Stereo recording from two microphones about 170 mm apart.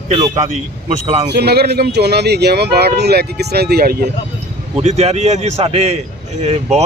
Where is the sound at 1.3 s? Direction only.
70° right (ahead or behind).